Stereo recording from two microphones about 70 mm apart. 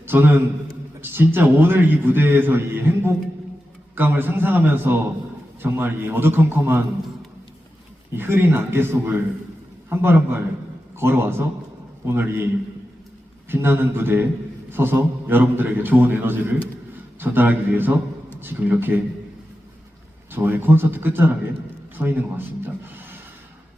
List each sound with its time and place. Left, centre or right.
0.0 s a man's voice: right
8.1 s a man's voice: right
13.5 s a man's voice: right
20.3 s a man's voice: right